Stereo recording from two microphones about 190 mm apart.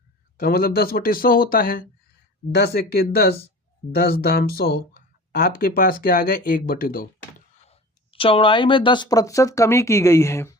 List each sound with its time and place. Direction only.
0.3 s speech: 50° left (ahead or behind)
7.3 s speech: 30° left (ahead or behind); by 10.5 s 15° left (ahead or behind)